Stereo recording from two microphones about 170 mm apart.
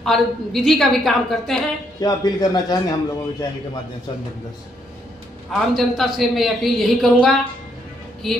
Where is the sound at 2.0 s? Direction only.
20° left (ahead or behind).